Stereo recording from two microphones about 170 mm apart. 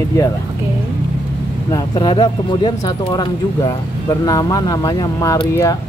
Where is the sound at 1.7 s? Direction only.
25° left (ahead or behind).